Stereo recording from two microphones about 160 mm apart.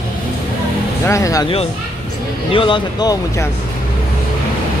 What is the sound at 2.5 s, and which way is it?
Speech, 30° left (ahead or behind).